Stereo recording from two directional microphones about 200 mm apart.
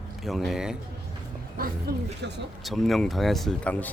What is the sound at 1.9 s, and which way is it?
Speech, 45° right (ahead or behind).